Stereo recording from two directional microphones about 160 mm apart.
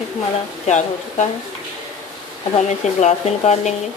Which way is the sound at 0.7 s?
50° left (ahead or behind).